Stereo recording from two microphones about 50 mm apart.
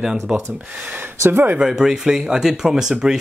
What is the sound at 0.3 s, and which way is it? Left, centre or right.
Speech, right.